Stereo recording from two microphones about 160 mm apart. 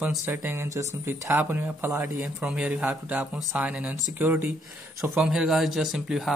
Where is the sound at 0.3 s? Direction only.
15° right (ahead or behind).